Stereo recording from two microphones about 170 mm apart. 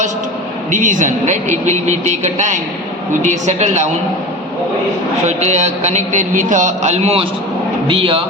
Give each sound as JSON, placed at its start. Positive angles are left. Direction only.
{"t": 0.7, "sound": "a man's voice", "side_deg": -50}
{"t": 5.2, "sound": "a man's voice", "side_deg": -40}